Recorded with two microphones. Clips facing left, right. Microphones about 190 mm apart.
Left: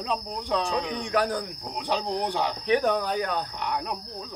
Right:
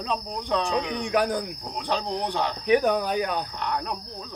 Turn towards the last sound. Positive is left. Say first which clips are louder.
# right 1 dB
turn(degrees=10)  # may be behind; listen again after turning